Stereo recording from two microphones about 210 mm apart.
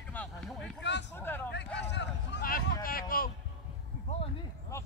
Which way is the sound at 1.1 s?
10° left (ahead or behind).